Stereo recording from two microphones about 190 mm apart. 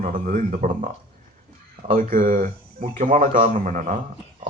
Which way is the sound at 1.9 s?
45° right (ahead or behind).